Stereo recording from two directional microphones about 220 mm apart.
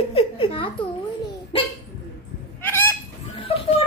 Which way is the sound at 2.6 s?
10° left (ahead or behind).